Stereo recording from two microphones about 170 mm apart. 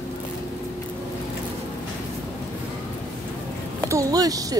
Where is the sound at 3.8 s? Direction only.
20° right (ahead or behind).